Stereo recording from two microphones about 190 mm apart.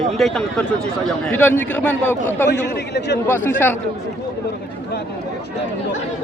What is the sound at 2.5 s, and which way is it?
Speech, 60° left (ahead or behind).